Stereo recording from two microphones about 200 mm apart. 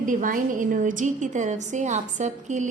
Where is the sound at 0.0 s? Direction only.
40° right (ahead or behind).